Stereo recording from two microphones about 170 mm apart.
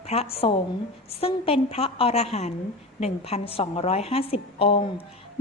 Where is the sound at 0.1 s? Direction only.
35° left (ahead or behind).